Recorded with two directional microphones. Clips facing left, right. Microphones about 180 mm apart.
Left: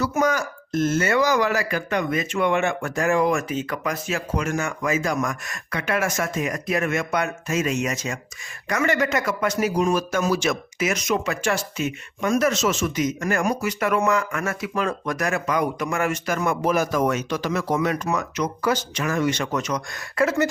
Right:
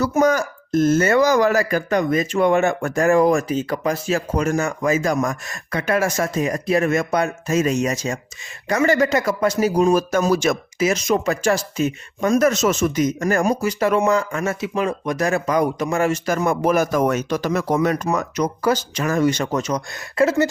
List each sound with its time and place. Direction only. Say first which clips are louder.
0.0 s speech: right 5 dB; 40° right (ahead or behind)
10.8 s speech: right 5 dB; 30° right (ahead or behind)
16.6 s speech: right 3 dB; 45° right (ahead or behind); by 20.5 s 30° right (ahead or behind)